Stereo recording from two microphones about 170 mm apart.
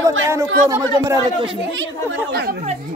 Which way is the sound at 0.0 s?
15° right (ahead or behind).